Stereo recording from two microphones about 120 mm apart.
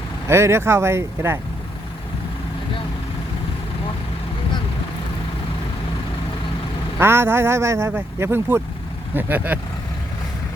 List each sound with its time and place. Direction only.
0.3 s speech: 25° right (ahead or behind)
7.0 s speech: 20° right (ahead or behind)